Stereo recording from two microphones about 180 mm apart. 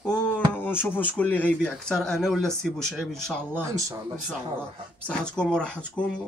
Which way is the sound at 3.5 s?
15° right (ahead or behind).